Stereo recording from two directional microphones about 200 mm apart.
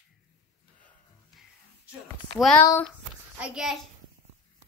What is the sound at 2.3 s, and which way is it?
Speech, centre (ahead or behind).